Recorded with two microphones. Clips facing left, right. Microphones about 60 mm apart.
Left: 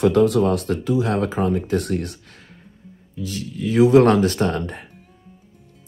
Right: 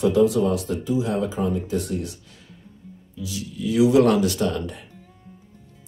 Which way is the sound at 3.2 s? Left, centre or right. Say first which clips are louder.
Left 3 dB; left.